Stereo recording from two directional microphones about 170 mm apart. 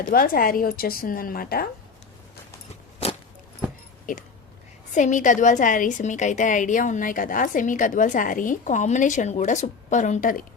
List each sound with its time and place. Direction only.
0.0 s speech: 55° left (ahead or behind)
4.1 s a woman's voice: 50° left (ahead or behind)